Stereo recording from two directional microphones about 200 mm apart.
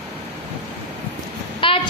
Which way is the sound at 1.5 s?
25° left (ahead or behind).